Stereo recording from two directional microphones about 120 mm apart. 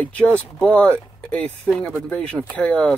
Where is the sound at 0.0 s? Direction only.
10° left (ahead or behind).